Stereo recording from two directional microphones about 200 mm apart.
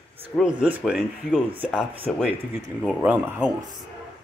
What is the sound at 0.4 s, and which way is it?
Speech, 5° right (ahead or behind).